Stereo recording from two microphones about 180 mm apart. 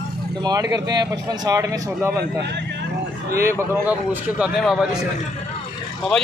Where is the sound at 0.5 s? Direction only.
20° right (ahead or behind).